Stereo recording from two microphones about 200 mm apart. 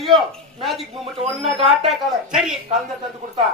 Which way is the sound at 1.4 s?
30° right (ahead or behind).